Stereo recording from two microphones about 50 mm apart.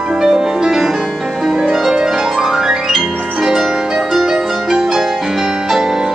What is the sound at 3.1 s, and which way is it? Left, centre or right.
Harp, right.